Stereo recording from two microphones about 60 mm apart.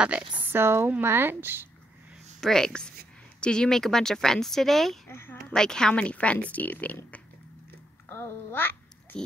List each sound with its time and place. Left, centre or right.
0.0 s a sound: right
0.5 s speech: right
2.4 s speech: centre
5.1 s a child's voice: left
5.5 s speech: centre; by 7.0 s left
8.1 s a child's voice: left
9.1 s a sound: centre